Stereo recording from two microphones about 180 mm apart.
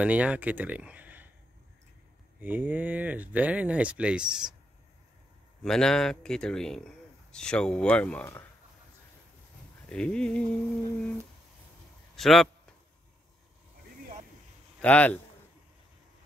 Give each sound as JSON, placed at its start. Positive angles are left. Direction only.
{"t": 0.0, "sound": "speech", "side_deg": -5}
{"t": 2.4, "sound": "speech", "side_deg": -10}
{"t": 5.6, "sound": "speech", "side_deg": 5}
{"t": 9.8, "sound": "speech", "side_deg": 5}
{"t": 12.2, "sound": "speech", "side_deg": 0}
{"t": 14.8, "sound": "a man's voice", "side_deg": 10}